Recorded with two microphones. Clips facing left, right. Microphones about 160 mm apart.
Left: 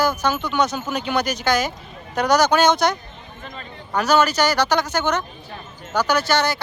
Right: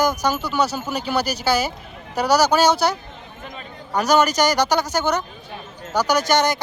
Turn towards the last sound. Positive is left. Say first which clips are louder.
# right 1 dB
turn(degrees=-15)  # may be behind; listen again after turning